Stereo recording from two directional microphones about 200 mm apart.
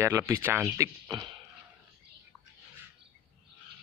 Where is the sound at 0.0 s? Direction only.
15° right (ahead or behind).